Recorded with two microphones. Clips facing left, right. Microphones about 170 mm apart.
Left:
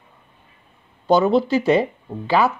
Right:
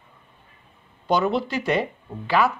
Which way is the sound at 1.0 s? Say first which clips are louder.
Left 6 dB; 30° left (ahead or behind).